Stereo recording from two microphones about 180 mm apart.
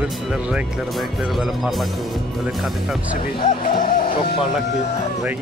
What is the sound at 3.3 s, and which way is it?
Speech, 25° left (ahead or behind).